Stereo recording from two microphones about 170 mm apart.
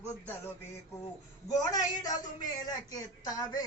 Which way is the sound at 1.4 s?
20° left (ahead or behind).